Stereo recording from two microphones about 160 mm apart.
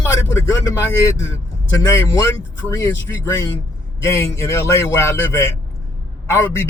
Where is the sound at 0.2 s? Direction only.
20° left (ahead or behind).